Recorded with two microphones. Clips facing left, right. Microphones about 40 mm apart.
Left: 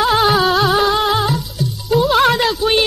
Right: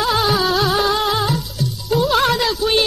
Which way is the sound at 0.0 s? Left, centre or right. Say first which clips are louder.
Left 4 dB; centre.